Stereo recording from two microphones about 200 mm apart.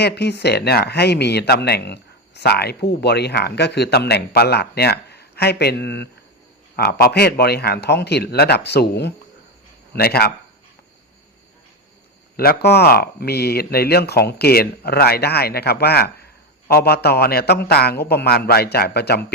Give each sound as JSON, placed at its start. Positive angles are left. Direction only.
{"t": 0.0, "sound": "speech", "side_deg": 55}
{"t": 12.4, "sound": "speech", "side_deg": 50}